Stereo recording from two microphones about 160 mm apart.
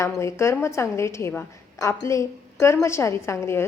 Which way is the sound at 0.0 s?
15° left (ahead or behind).